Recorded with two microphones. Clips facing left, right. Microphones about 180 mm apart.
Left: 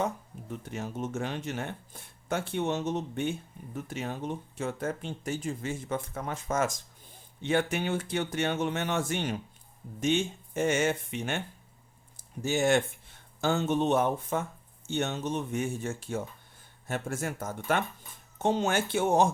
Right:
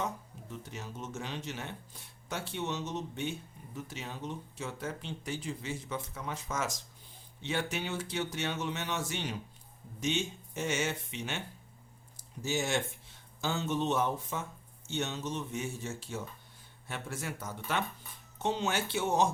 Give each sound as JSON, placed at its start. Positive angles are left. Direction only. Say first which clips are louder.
{"t": 0.6, "sound": "speech", "louder": "left 9 dB", "side_deg": 55}